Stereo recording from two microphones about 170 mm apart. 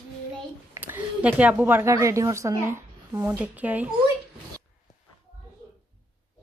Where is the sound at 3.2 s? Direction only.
10° right (ahead or behind).